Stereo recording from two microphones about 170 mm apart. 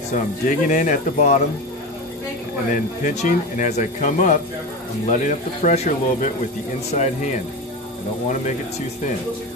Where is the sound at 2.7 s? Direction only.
45° left (ahead or behind).